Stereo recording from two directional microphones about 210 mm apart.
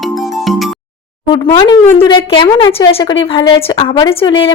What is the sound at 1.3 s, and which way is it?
Speech, 20° left (ahead or behind).